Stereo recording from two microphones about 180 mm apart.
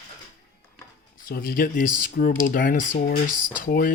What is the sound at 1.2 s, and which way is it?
Speech, 55° left (ahead or behind).